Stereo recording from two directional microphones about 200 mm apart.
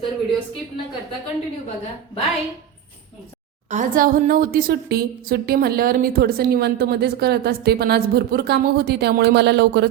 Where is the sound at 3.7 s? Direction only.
40° right (ahead or behind).